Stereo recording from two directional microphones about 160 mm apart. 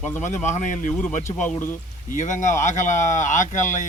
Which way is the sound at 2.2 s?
50° left (ahead or behind).